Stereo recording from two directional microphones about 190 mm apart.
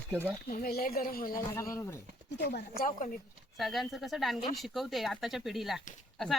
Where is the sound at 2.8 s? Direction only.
45° left (ahead or behind).